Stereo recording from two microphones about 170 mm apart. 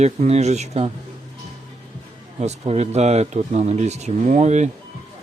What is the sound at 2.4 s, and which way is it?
Speech, 40° right (ahead or behind).